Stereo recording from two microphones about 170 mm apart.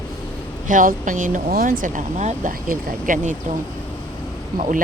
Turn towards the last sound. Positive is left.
turn(degrees=-50)  # may be behind; listen again after turning